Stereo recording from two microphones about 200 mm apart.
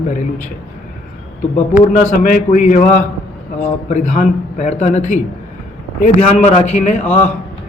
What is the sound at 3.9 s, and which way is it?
A man's voice, 40° left (ahead or behind).